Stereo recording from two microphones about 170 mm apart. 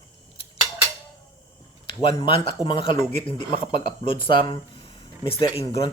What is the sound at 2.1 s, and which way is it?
Speech, 30° left (ahead or behind).